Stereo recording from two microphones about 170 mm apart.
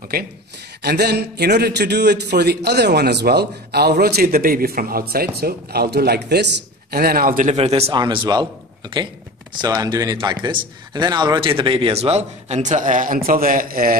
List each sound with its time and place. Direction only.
0.8 s a man's voice: 75° right (ahead or behind); by 7.5 s 55° right (ahead or behind)
7.5 s a man's voice: 35° right (ahead or behind); by 13.9 s 60° right (ahead or behind)